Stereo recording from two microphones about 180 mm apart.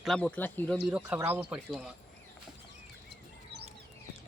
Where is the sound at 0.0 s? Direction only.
5° left (ahead or behind).